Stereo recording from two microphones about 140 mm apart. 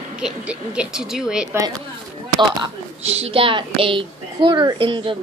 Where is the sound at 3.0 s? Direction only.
45° right (ahead or behind).